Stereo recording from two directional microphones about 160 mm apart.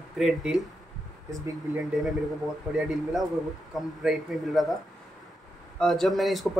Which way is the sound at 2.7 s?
5° right (ahead or behind).